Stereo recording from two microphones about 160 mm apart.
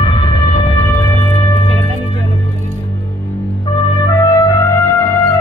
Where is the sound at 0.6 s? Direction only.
25° left (ahead or behind).